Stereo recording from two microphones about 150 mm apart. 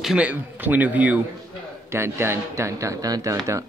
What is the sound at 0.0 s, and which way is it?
A man's voice, 5° right (ahead or behind).